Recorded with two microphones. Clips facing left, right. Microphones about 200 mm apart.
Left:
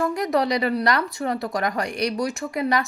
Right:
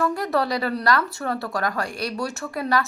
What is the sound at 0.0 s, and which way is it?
Speech, 15° left (ahead or behind).